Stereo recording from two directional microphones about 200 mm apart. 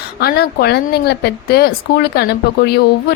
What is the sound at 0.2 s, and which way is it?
A woman's voice, 50° left (ahead or behind).